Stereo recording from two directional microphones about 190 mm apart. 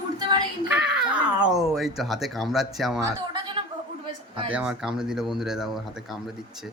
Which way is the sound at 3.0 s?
25° right (ahead or behind).